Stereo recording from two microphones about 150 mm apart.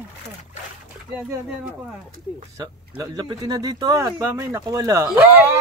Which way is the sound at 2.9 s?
30° right (ahead or behind).